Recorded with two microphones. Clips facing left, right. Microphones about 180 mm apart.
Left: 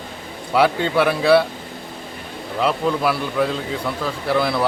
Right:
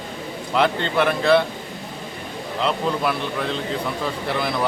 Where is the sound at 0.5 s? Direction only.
5° left (ahead or behind).